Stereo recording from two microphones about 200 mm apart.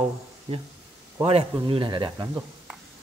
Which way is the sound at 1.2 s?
30° right (ahead or behind).